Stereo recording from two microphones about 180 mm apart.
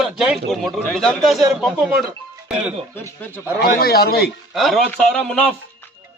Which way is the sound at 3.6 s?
60° left (ahead or behind).